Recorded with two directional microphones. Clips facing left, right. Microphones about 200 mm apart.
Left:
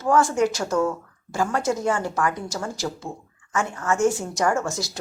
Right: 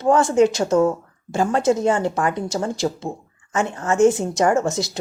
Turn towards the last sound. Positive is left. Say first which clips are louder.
# right 6 dB
turn(degrees=-20)  # may be behind; listen again after turning